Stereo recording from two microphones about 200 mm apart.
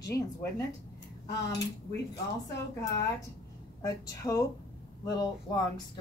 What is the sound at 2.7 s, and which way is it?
A woman's voice, 15° left (ahead or behind).